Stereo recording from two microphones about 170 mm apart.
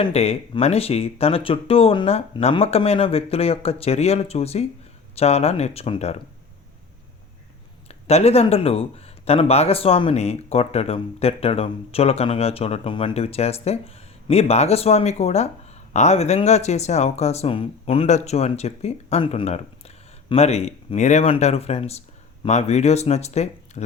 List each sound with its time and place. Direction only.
0.0 s speech: 35° left (ahead or behind)
7.9 s speech: 35° left (ahead or behind)